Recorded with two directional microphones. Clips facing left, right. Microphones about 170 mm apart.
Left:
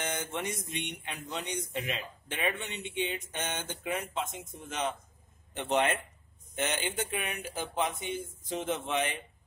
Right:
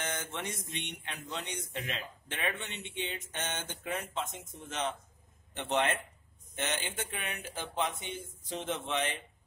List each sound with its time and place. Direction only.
0.0 s speech: 15° left (ahead or behind)